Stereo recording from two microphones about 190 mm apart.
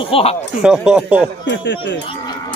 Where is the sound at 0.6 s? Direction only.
5° right (ahead or behind).